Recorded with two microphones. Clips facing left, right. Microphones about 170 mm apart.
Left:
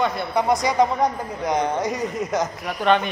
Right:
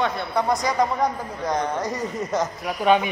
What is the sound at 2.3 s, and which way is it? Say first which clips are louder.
Speech: right 3 dB; 5° right (ahead or behind).